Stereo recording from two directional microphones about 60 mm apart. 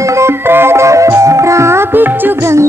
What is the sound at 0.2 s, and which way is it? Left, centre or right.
Music, right.